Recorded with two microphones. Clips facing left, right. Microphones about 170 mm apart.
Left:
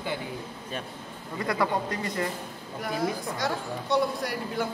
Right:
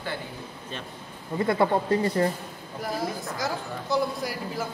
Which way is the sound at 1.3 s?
25° right (ahead or behind).